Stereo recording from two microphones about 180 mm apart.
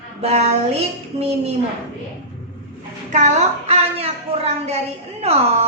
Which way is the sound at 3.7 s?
35° right (ahead or behind).